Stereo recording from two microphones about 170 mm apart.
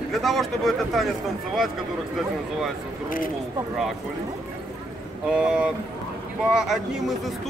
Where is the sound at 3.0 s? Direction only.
55° left (ahead or behind).